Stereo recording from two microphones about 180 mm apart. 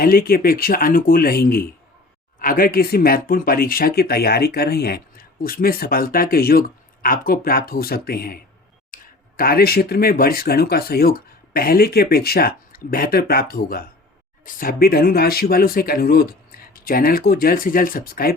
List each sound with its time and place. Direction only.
0.0 s speech: 55° left (ahead or behind)
8.9 s a sound: 50° left (ahead or behind)
9.4 s speech: 60° left (ahead or behind)